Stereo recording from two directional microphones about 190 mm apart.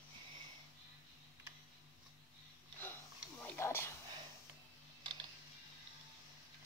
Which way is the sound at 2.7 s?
10° left (ahead or behind).